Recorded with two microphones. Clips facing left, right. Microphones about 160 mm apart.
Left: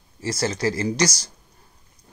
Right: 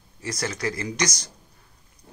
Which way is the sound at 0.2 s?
30° left (ahead or behind).